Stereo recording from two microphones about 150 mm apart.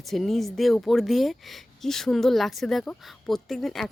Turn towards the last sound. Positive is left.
turn(degrees=0)  # may be behind; listen again after turning